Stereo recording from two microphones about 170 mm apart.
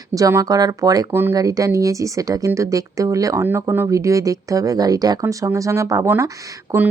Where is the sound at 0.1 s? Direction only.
20° right (ahead or behind).